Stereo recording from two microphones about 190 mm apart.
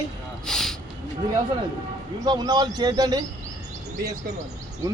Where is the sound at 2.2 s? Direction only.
20° right (ahead or behind).